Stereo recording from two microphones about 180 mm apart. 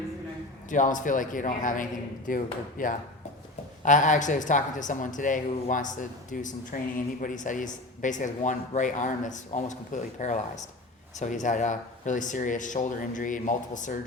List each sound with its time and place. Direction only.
0.7 s speech: 45° left (ahead or behind)